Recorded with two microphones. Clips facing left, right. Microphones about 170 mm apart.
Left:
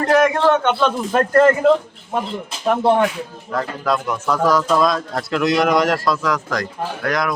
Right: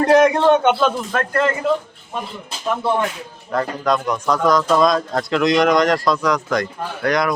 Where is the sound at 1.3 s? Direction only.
45° left (ahead or behind).